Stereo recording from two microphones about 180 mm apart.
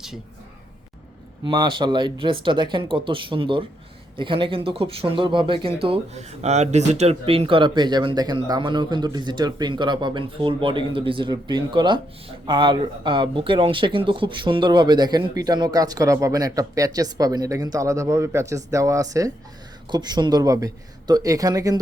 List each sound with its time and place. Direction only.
1.5 s speech: 25° right (ahead or behind)